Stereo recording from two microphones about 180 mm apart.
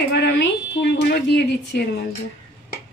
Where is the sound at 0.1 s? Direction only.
75° left (ahead or behind).